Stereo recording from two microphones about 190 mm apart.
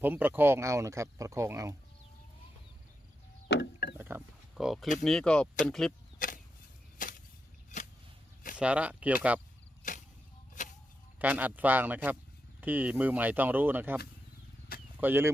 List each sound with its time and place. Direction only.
0.0 s speech: 10° right (ahead or behind)
3.5 s mechanisms: 60° left (ahead or behind)
3.9 s wild animals: 10° right (ahead or behind)
5.0 s speech: 5° left (ahead or behind)
6.1 s chop: 45° left (ahead or behind)
7.7 s a sound: 40° left (ahead or behind)
8.5 s speech: 5° right (ahead or behind)
9.8 s arrow: 40° left (ahead or behind)
11.2 s speech: 10° right (ahead or behind)
14.7 s a sound: 50° left (ahead or behind)
15.0 s speech: 10° right (ahead or behind)